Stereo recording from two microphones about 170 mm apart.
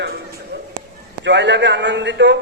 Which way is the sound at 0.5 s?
80° right.